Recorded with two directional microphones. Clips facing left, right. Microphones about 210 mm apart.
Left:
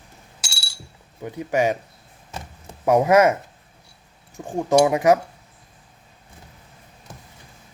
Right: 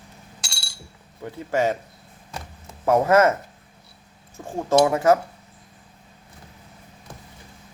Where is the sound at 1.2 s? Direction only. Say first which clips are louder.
Left 2 dB; 15° left (ahead or behind).